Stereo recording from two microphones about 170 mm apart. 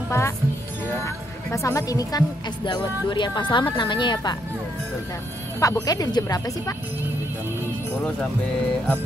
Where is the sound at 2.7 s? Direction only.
30° left (ahead or behind).